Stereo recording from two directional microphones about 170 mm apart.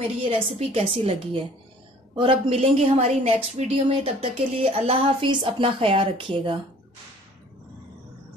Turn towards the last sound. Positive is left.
turn(degrees=-30)  # may be behind; listen again after turning